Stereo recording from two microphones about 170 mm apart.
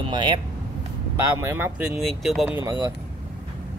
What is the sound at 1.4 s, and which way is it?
Speech, 15° right (ahead or behind).